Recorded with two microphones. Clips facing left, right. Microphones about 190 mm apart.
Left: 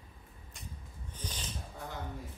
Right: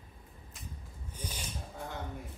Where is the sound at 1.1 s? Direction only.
10° right (ahead or behind).